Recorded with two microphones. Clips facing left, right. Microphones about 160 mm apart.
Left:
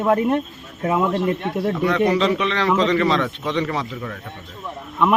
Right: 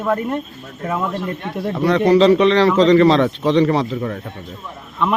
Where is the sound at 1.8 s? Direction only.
35° right (ahead or behind).